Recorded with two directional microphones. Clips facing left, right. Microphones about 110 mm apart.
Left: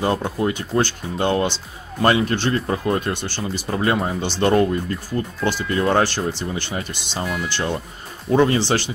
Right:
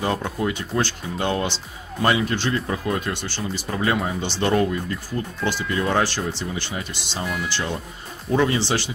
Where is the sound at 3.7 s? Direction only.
30° left (ahead or behind).